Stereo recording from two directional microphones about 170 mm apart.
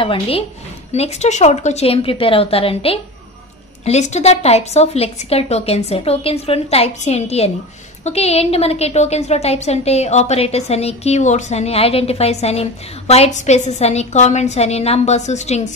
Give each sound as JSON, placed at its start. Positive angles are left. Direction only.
{"t": 0.0, "sound": "a woman's voice", "side_deg": 30}